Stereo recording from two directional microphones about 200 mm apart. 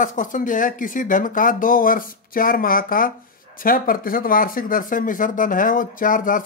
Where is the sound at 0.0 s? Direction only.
40° left (ahead or behind).